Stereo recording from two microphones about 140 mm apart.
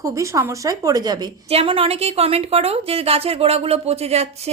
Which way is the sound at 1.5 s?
45° right (ahead or behind).